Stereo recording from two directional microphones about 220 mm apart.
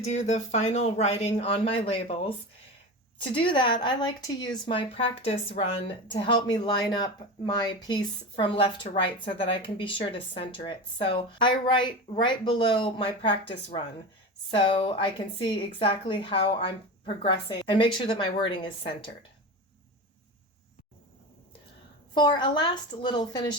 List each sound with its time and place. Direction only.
0.1 s speech: 30° left (ahead or behind)
22.1 s speech: 20° left (ahead or behind)